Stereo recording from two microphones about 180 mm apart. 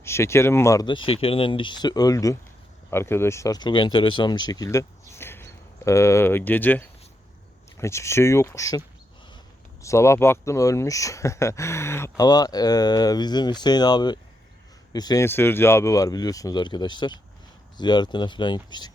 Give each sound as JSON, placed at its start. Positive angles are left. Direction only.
{"t": 0.0, "sound": "speech", "side_deg": 15}
{"t": 9.8, "sound": "speech", "side_deg": 15}